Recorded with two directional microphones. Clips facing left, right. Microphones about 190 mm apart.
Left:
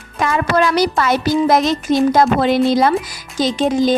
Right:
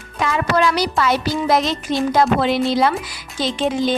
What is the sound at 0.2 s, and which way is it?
A child's voice, 45° left (ahead or behind).